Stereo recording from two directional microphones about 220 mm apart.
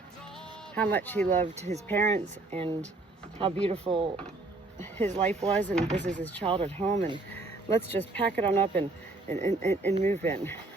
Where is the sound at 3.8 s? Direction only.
20° right (ahead or behind).